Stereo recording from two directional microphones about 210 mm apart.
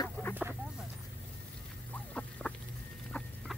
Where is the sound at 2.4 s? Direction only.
5° left (ahead or behind).